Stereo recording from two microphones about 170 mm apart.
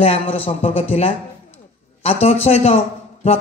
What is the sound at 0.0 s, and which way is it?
A man's voice, 35° left (ahead or behind).